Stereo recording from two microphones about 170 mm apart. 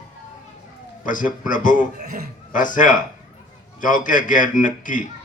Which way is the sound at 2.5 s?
50° left (ahead or behind).